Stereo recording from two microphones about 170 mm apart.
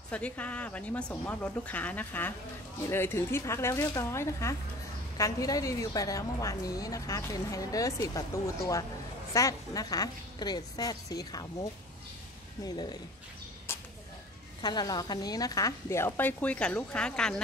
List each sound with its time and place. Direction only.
0.1 s a woman's voice: 10° left (ahead or behind); by 13.0 s 25° left (ahead or behind)
13.7 s a sound: 15° left (ahead or behind)
14.6 s a woman's voice: 25° left (ahead or behind); by 17.4 s 5° left (ahead or behind)